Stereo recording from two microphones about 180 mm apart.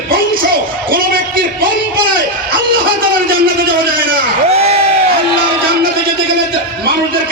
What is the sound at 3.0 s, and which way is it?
Speech, 55° right (ahead or behind).